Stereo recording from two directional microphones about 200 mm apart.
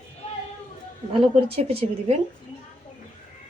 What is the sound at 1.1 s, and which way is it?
A woman's voice, 30° right (ahead or behind).